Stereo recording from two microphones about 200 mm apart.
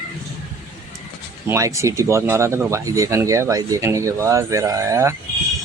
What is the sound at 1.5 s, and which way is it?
Speech, 15° right (ahead or behind).